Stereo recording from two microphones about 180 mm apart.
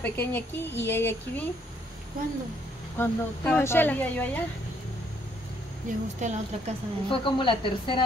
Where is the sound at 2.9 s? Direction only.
10° left (ahead or behind).